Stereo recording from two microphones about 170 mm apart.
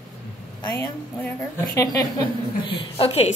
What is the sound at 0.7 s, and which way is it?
Speech, 15° left (ahead or behind).